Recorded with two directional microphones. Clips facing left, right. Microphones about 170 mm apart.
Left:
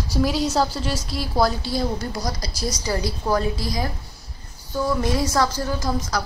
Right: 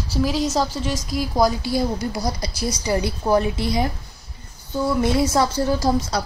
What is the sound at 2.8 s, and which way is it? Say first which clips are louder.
Speech: right 4 dB; 20° right (ahead or behind).